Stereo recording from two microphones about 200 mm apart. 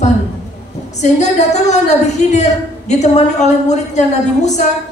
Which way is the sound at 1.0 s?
35° left (ahead or behind).